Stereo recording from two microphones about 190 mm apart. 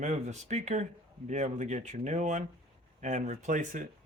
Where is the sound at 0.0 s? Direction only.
35° right (ahead or behind).